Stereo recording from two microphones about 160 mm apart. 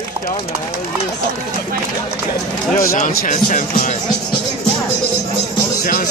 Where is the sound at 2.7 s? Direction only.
55° left (ahead or behind).